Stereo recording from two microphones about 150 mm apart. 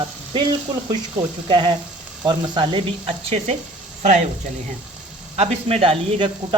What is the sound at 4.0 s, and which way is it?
Speech, 50° right (ahead or behind).